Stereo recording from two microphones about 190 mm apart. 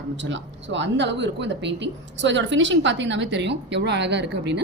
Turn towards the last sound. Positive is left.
turn(degrees=-65)  # may be behind; listen again after turning